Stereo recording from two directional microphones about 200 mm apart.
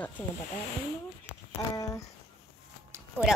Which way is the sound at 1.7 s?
15° left (ahead or behind).